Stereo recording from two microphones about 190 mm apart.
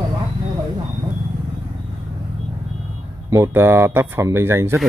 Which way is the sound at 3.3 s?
15° right (ahead or behind).